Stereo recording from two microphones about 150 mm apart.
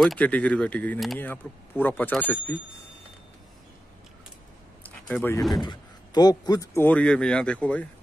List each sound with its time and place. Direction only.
0.0 s speech: 5° left (ahead or behind)
4.8 s a sound: 10° left (ahead or behind)
5.6 s speech: 30° left (ahead or behind); by 7.9 s 10° left (ahead or behind)